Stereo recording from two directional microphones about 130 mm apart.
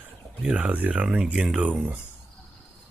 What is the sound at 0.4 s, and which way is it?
Speech, 10° right (ahead or behind).